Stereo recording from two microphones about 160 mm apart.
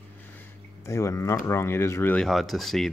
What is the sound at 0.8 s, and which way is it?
Speech, 20° left (ahead or behind).